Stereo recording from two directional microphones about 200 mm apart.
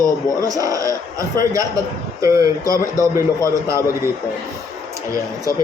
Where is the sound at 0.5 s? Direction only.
15° right (ahead or behind).